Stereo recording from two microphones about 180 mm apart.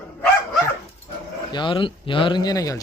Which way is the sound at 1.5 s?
25° left (ahead or behind).